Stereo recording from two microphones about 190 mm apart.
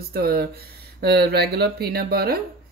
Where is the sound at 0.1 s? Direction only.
55° right (ahead or behind).